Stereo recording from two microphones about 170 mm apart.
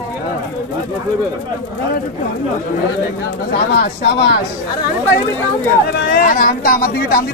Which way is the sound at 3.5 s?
60° left (ahead or behind).